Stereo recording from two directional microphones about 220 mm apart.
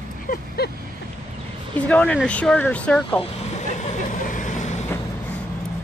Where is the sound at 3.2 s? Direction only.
30° left (ahead or behind).